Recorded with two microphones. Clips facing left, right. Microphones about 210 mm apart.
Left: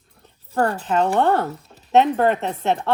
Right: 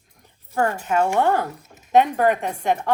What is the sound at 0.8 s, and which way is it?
A woman's voice, 10° right (ahead or behind).